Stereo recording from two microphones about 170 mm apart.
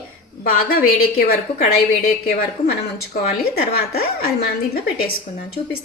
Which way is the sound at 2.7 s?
60° left (ahead or behind).